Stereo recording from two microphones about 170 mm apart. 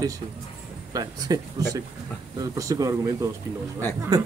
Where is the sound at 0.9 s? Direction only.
20° right (ahead or behind).